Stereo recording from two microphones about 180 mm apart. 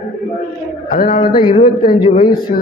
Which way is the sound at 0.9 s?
50° left (ahead or behind).